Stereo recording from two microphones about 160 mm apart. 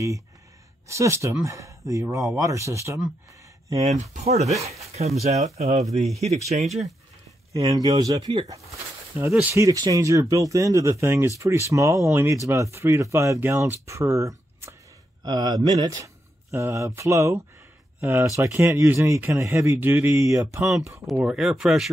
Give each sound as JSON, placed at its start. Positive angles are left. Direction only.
{"t": 0.8, "sound": "speech", "side_deg": -20}
{"t": 3.8, "sound": "speech", "side_deg": -50}
{"t": 7.5, "sound": "speech", "side_deg": -25}
{"t": 9.1, "sound": "speech", "side_deg": -15}
{"t": 21.1, "sound": "speech", "side_deg": -5}